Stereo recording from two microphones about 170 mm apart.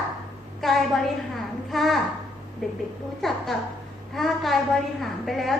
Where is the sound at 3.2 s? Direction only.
Centre (ahead or behind).